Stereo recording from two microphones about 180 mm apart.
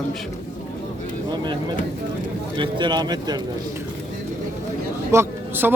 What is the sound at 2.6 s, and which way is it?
Speech, 25° right (ahead or behind).